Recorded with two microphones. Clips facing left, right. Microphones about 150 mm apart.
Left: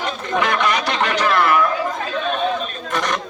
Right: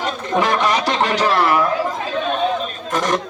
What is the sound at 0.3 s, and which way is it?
Speech, 35° right (ahead or behind).